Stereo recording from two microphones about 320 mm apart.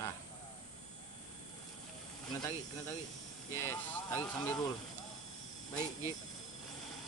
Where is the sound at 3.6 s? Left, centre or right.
Centre.